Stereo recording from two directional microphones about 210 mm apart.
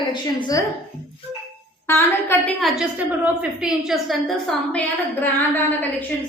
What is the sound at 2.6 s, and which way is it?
A woman's voice, 5° right (ahead or behind).